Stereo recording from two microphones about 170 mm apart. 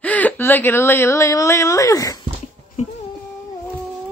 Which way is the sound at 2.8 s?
40° left (ahead or behind).